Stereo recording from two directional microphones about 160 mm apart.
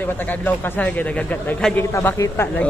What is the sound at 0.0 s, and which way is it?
Speech, 10° left (ahead or behind).